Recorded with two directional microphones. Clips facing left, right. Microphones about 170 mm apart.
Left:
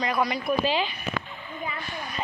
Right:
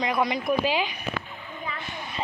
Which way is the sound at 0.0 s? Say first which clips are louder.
Right 1 dB; 20° right (ahead or behind).